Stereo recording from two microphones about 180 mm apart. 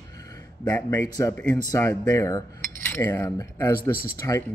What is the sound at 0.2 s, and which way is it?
A man's voice, 20° left (ahead or behind).